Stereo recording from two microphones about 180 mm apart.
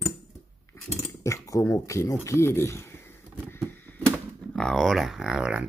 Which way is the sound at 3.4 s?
10° left (ahead or behind).